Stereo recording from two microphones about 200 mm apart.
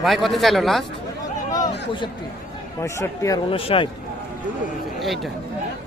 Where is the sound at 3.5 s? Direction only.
25° left (ahead or behind).